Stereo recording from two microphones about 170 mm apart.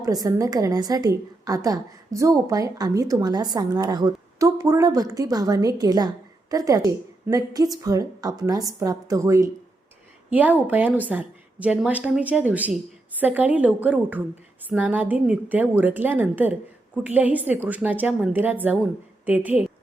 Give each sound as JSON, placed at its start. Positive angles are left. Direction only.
{"t": 0.0, "sound": "a woman's voice", "side_deg": -20}